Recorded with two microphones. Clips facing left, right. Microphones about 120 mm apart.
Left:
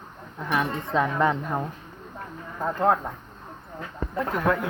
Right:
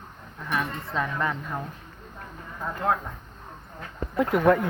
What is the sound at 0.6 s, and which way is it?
Speech, 20° left (ahead or behind).